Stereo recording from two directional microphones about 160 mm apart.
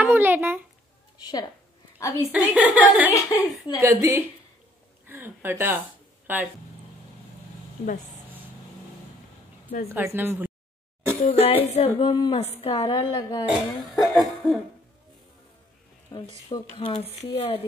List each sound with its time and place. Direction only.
0.0 s a sound: 15° right (ahead or behind)
1.1 s a sound: 25° left (ahead or behind)
2.0 s a woman's voice: 20° left (ahead or behind)
2.3 s a woman's voice: 10° right (ahead or behind)
3.1 s speech: 20° left (ahead or behind)
3.8 s speech: 20° right (ahead or behind)
9.8 s a woman's voice: 15° right (ahead or behind)
11.1 s speech: 40° left (ahead or behind)
12.0 s speech: 25° left (ahead or behind)
13.5 s cough: centre (ahead or behind)
16.1 s speech: 25° left (ahead or behind)
17.2 s speech: 40° left (ahead or behind)